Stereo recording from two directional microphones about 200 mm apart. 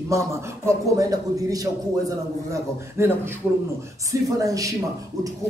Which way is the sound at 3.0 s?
15° right (ahead or behind).